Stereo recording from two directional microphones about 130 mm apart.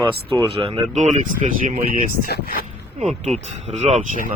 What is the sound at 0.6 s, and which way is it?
Speech, 35° right (ahead or behind).